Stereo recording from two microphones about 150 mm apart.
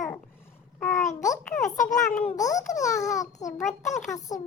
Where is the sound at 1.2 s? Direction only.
55° left (ahead or behind).